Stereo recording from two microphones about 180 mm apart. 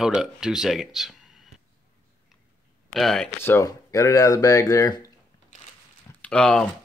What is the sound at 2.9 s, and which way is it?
Speech, centre (ahead or behind).